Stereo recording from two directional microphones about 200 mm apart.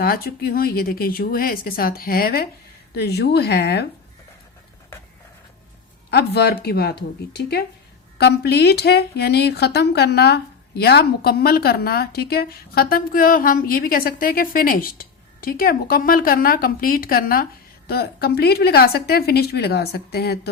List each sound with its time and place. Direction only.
0.0 s a woman's voice: 50° left (ahead or behind)
6.1 s a woman's voice: 55° left (ahead or behind)